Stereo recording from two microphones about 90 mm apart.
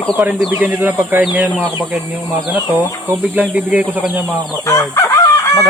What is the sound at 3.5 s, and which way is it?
Speech, 15° right (ahead or behind).